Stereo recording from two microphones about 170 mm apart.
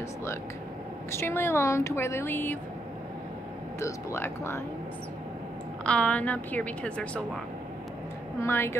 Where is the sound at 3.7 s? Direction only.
15° left (ahead or behind).